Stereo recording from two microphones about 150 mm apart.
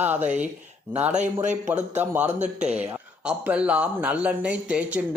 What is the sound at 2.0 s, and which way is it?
Speech, 15° right (ahead or behind).